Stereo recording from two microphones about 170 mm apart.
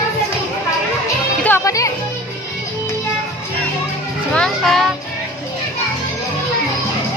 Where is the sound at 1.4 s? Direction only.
15° left (ahead or behind).